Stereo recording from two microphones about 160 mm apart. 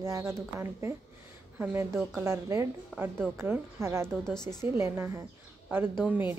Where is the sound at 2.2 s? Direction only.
15° right (ahead or behind).